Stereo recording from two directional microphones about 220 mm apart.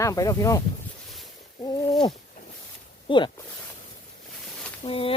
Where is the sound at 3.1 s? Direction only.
25° left (ahead or behind).